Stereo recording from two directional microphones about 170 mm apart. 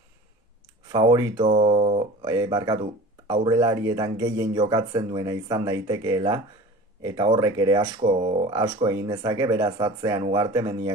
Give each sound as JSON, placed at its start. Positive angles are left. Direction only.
{"t": 0.9, "sound": "speech", "side_deg": -20}
{"t": 1.4, "sound": "speech", "side_deg": -35}
{"t": 2.2, "sound": "speech", "side_deg": -20}